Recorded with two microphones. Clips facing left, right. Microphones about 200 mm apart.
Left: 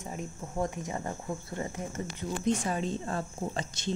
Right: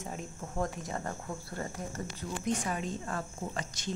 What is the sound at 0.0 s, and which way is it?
Speech, centre (ahead or behind).